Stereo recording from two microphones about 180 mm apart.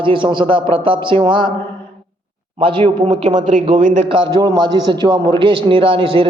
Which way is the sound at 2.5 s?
30° right (ahead or behind).